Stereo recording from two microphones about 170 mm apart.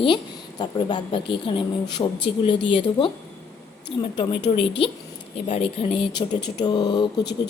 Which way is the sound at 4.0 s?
30° left (ahead or behind).